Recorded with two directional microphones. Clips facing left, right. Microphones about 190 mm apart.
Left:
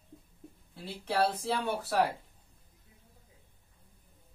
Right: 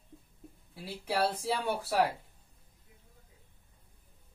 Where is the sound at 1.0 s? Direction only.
10° right (ahead or behind).